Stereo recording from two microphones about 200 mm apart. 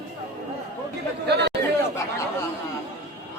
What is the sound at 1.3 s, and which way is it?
Chatter, 55° right (ahead or behind).